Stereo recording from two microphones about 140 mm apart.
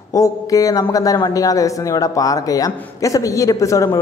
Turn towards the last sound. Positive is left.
turn(degrees=25)  # may be behind; listen again after turning